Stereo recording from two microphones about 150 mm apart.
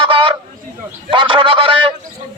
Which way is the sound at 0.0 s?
35° right (ahead or behind).